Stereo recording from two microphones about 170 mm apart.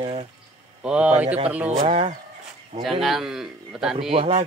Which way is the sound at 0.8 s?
5° right (ahead or behind).